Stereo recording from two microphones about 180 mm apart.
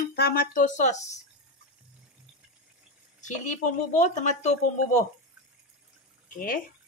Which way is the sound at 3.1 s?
45° left (ahead or behind).